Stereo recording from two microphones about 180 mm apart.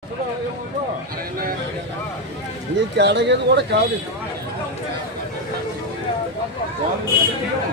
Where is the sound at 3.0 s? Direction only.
75° right (ahead or behind).